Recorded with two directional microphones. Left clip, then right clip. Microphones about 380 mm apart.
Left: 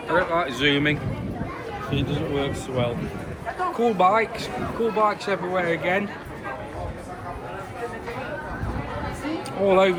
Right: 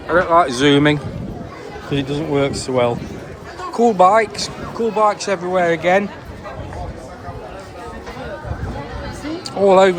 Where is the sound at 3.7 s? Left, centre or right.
Centre.